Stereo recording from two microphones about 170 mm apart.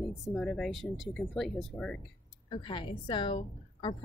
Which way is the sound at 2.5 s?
30° left (ahead or behind).